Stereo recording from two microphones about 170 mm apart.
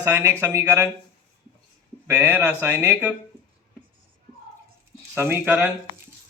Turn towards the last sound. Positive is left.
turn(degrees=-10)  # may be behind; listen again after turning